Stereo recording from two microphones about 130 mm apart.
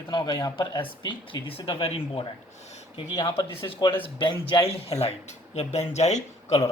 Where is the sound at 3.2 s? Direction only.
30° left (ahead or behind); by 6.6 s 60° left (ahead or behind).